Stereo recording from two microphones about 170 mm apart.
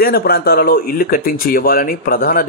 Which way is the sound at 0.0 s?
65° left (ahead or behind).